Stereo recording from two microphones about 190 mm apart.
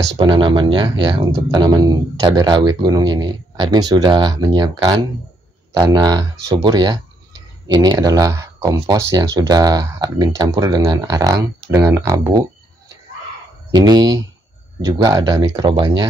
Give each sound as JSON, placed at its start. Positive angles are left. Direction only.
{"t": 0.2, "sound": "speech", "side_deg": -25}
{"t": 13.7, "sound": "speech", "side_deg": -20}